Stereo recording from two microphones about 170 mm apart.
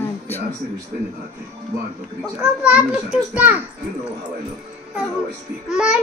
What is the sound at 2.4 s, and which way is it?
A child's voice, 5° right (ahead or behind).